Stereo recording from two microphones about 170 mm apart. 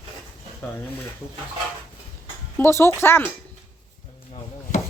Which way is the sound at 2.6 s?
15° left (ahead or behind).